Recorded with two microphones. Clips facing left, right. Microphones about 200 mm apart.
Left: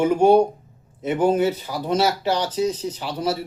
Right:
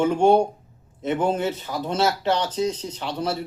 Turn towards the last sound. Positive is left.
turn(degrees=10)  # may be behind; listen again after turning